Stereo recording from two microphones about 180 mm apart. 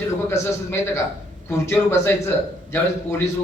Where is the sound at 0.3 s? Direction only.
15° left (ahead or behind).